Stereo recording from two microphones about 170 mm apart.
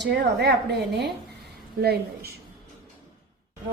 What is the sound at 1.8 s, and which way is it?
Speech, 65° right (ahead or behind).